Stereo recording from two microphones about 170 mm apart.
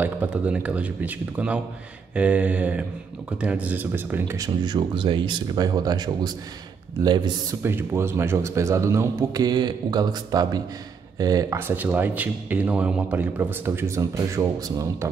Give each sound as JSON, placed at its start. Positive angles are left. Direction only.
{"t": 0.0, "sound": "a man's voice", "side_deg": -10}
{"t": 7.6, "sound": "a man's voice", "side_deg": -15}